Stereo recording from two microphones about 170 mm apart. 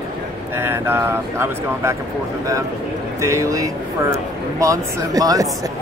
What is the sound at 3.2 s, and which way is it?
Speech, 20° right (ahead or behind).